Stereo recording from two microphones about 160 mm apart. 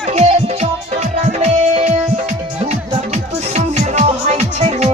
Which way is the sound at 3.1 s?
45° right (ahead or behind).